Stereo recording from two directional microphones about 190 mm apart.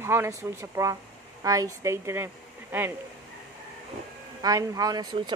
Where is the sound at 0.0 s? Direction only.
15° right (ahead or behind).